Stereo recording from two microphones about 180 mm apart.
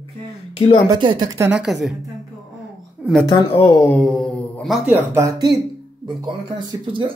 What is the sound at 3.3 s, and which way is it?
Speech, 25° left (ahead or behind).